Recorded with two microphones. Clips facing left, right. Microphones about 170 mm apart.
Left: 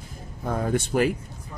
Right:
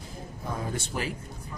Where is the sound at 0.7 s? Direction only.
60° left (ahead or behind).